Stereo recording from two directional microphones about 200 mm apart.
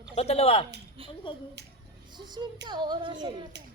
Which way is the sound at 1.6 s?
60° right (ahead or behind).